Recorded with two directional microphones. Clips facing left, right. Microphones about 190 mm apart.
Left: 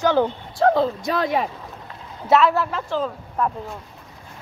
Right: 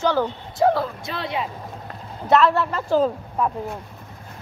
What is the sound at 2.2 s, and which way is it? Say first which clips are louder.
Speech: even; centre (ahead or behind).